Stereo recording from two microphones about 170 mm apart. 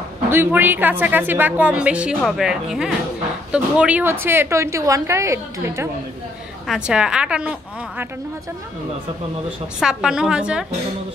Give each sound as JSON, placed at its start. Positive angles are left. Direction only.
{"t": 0.3, "sound": "a woman's voice", "side_deg": -10}
{"t": 6.7, "sound": "a woman's voice", "side_deg": -5}
{"t": 9.8, "sound": "a woman's voice", "side_deg": -5}